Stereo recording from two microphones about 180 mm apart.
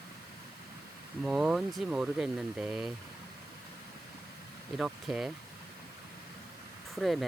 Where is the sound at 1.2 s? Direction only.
5° right (ahead or behind).